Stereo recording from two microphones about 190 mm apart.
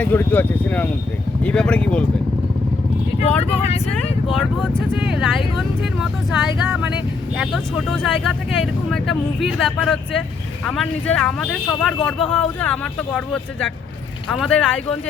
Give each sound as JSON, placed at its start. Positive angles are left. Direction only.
{"t": 0.0, "sound": "speech", "side_deg": 10}
{"t": 3.5, "sound": "speech", "side_deg": 35}
{"t": 4.4, "sound": "speech", "side_deg": -5}